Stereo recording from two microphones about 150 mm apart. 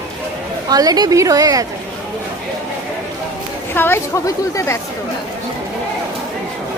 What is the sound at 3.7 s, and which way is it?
Speech, 15° left (ahead or behind).